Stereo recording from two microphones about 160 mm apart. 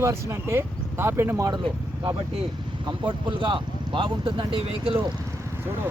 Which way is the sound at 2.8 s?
25° right (ahead or behind).